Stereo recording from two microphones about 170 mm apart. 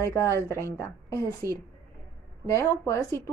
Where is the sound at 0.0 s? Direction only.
15° left (ahead or behind).